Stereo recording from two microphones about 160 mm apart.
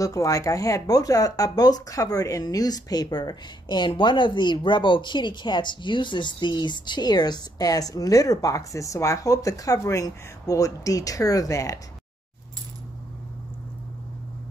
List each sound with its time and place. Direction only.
0.0 s speech: 20° left (ahead or behind)